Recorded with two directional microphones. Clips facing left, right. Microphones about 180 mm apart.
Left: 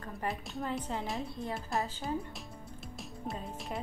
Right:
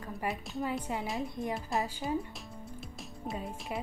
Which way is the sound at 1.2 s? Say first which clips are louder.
Right 3 dB; 15° right (ahead or behind).